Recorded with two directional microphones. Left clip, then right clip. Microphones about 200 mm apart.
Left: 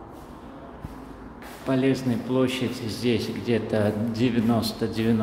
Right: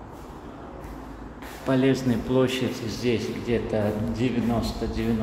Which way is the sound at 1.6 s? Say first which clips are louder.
Right 1 dB; centre (ahead or behind).